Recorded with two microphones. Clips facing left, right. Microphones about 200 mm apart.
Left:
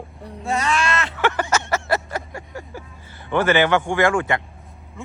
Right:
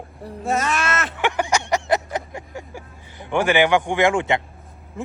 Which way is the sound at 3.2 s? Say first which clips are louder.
Even; 15° right (ahead or behind).